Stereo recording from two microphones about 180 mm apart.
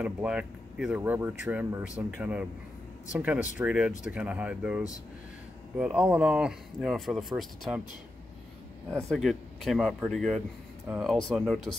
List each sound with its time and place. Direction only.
0.0 s speech: 5° right (ahead or behind)
9.1 s speech: centre (ahead or behind)